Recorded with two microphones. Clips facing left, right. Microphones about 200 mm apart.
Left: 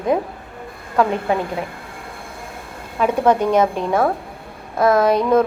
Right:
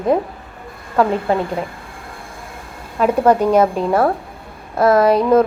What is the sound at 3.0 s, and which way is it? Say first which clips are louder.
A woman's voice: right 2 dB; 10° right (ahead or behind).